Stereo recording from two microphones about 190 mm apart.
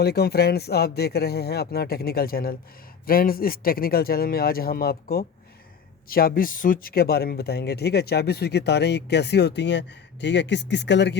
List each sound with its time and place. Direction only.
0.0 s speech: 55° left (ahead or behind)